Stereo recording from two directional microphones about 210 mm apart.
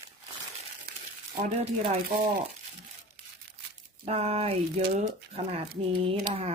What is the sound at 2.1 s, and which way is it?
Speech, 35° right (ahead or behind).